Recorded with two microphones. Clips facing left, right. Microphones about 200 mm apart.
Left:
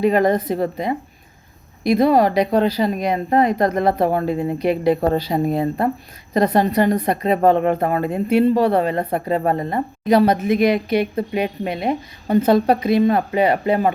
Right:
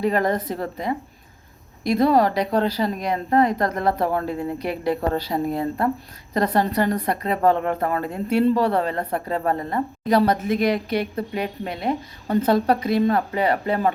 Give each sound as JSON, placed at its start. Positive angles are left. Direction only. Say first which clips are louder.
{"t": 0.0, "sound": "a woman's voice", "louder": "left 5 dB", "side_deg": 15}